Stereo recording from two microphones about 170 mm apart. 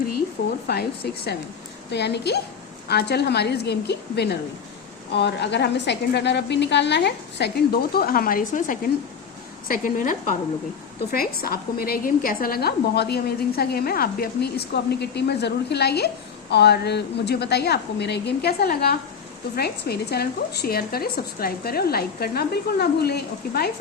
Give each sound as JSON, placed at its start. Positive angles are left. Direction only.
{"t": 0.7, "sound": "a woman's voice", "side_deg": 70}
{"t": 5.1, "sound": "a woman's voice", "side_deg": 90}
{"t": 11.1, "sound": "a woman's voice", "side_deg": 60}